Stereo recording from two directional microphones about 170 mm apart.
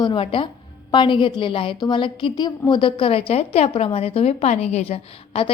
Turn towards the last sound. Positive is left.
turn(degrees=35)  # may be behind; listen again after turning